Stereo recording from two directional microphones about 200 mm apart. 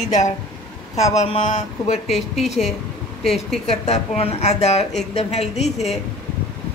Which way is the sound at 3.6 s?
35° left (ahead or behind).